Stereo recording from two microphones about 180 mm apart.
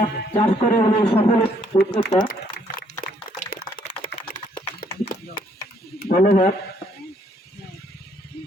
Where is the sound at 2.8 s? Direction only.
50° left (ahead or behind).